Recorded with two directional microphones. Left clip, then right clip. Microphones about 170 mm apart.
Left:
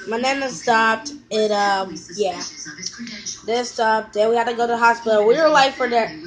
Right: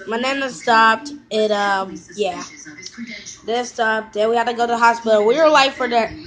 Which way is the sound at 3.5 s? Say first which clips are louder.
Even; 5° left (ahead or behind).